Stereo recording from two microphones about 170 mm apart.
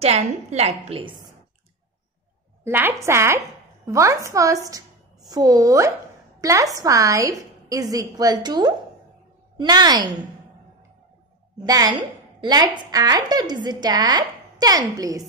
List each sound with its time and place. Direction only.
0.0 s a woman's voice: 40° right (ahead or behind)
2.6 s a woman's voice: 15° right (ahead or behind)
11.6 s a woman's voice: 20° right (ahead or behind)